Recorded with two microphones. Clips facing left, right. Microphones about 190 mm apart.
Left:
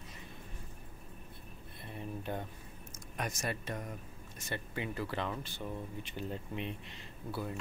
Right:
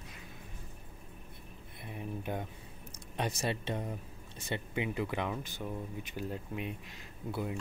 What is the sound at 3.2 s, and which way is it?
Speech, 30° right (ahead or behind).